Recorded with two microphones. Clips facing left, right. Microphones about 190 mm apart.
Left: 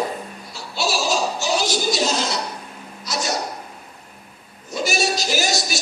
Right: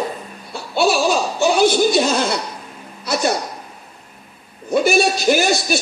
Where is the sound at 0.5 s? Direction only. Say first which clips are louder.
Right 8 dB; 55° right (ahead or behind).